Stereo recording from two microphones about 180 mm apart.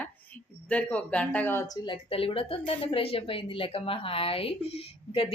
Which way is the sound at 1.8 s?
30° left (ahead or behind).